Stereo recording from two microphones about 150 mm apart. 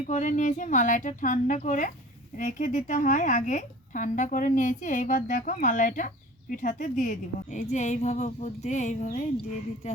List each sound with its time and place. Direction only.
0.1 s a woman's voice: 55° left (ahead or behind)